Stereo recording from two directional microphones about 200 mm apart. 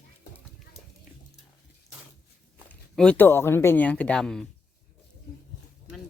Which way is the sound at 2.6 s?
5° left (ahead or behind).